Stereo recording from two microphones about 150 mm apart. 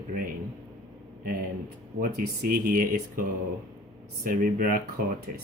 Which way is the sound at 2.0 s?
75° right (ahead or behind).